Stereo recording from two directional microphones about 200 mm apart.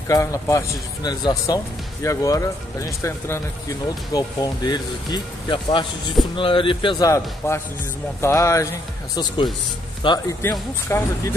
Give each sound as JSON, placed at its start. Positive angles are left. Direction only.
{"t": 0.1, "sound": "speech", "side_deg": 15}